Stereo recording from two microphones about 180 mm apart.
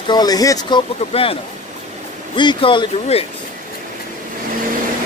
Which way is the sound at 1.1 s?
30° left (ahead or behind).